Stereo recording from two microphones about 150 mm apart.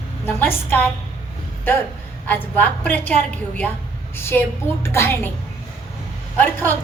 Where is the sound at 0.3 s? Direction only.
15° left (ahead or behind).